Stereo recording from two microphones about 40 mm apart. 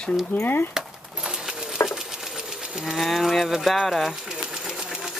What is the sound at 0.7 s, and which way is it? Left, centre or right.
Coin, centre.